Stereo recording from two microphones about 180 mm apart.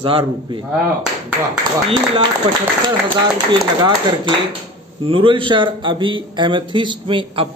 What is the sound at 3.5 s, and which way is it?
Speech, 25° right (ahead or behind).